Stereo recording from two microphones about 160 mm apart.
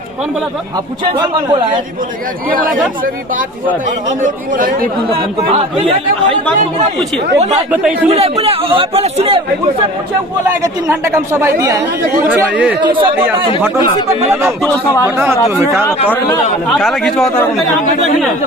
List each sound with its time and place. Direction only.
1.1 s a man's voice: 25° right (ahead or behind)
2.5 s speech: 60° right (ahead or behind)
4.2 s speech: 55° right (ahead or behind)
4.9 s speech: 35° right (ahead or behind)
7.3 s speech: 45° right (ahead or behind)
7.7 s a woman's voice: 10° right (ahead or behind)
8.1 s speech: 40° right (ahead or behind)
10.6 s a woman's voice: 20° right (ahead or behind)
12.8 s speech: 30° right (ahead or behind)
14.7 s a man's voice: 15° left (ahead or behind)
15.0 s a woman's voice: 15° right (ahead or behind)
16.6 s a man's voice: centre (ahead or behind)